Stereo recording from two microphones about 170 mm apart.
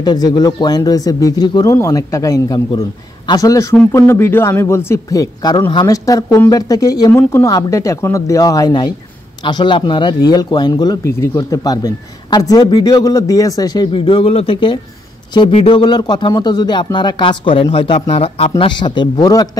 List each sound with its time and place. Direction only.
0.0 s speech: 25° left (ahead or behind)